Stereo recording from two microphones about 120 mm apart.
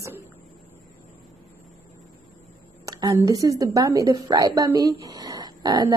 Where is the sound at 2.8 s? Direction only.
30° right (ahead or behind).